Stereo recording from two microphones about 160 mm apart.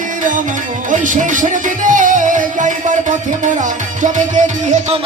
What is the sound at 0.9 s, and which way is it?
Music, 55° right (ahead or behind).